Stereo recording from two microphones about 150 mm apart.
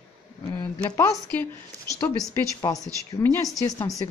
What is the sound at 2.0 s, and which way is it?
Speech, 20° left (ahead or behind).